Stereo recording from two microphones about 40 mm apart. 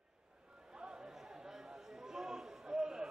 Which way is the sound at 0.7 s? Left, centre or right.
Right.